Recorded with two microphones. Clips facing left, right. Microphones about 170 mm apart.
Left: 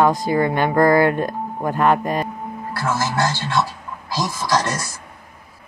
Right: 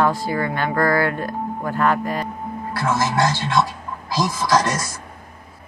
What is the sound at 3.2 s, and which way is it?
Speech, 20° right (ahead or behind).